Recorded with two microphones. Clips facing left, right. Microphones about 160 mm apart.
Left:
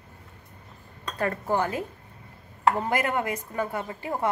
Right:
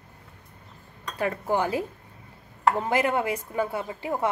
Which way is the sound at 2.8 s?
15° right (ahead or behind).